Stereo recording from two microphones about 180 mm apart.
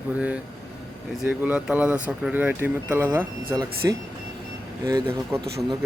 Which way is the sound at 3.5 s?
20° right (ahead or behind).